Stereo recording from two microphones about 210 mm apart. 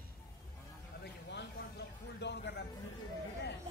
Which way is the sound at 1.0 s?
50° left (ahead or behind).